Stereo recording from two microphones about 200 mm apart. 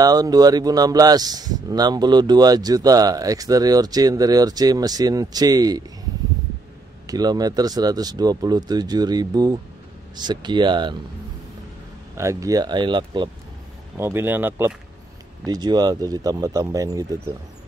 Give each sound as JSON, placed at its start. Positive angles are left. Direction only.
{"t": 0.0, "sound": "speech", "side_deg": -20}
{"t": 7.1, "sound": "speech", "side_deg": -20}
{"t": 12.2, "sound": "speech", "side_deg": -15}
{"t": 13.9, "sound": "speech", "side_deg": -10}
{"t": 15.4, "sound": "speech", "side_deg": -20}